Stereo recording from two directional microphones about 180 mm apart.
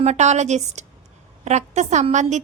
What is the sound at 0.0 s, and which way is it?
A woman's voice, 40° right (ahead or behind).